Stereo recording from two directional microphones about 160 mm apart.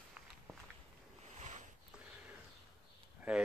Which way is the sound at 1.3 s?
45° right (ahead or behind).